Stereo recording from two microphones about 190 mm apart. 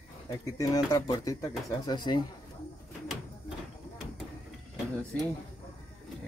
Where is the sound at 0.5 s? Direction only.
15° left (ahead or behind).